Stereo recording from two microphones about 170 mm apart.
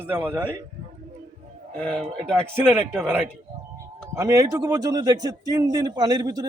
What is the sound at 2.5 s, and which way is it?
A man's voice, 10° right (ahead or behind).